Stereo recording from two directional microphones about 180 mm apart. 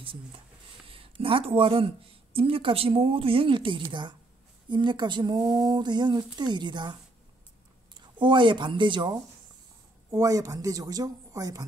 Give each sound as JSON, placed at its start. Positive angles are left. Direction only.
{"t": 0.0, "sound": "a woman's voice", "side_deg": -30}